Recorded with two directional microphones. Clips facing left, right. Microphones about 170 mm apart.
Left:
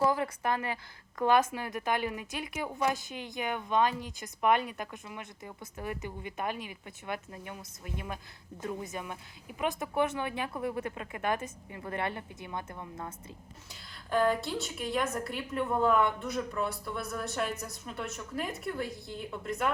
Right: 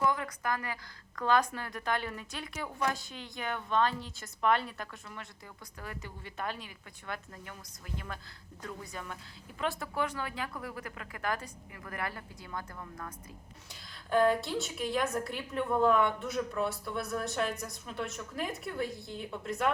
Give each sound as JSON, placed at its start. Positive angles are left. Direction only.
{"t": 0.0, "sound": "a woman's voice", "side_deg": 30}
{"t": 14.1, "sound": "a woman's voice", "side_deg": 0}